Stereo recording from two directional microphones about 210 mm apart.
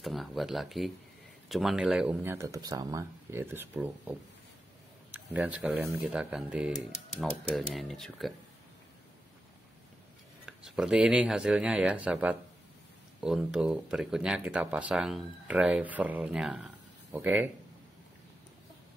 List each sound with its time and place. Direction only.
0.0 s speech: centre (ahead or behind)
10.4 s speech: 5° right (ahead or behind)